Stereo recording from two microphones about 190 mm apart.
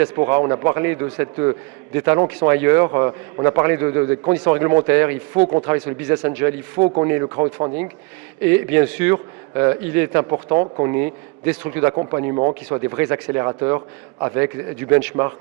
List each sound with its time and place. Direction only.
0.0 s a man's voice: 15° right (ahead or behind)
8.4 s a man's voice: 10° right (ahead or behind)
10.2 s speech: 30° right (ahead or behind)
10.8 s a man's voice: 15° right (ahead or behind)
12.4 s speech: 30° right (ahead or behind)
12.8 s a man's voice: 15° right (ahead or behind)